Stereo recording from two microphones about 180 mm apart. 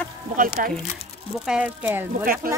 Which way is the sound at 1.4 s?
5° right (ahead or behind).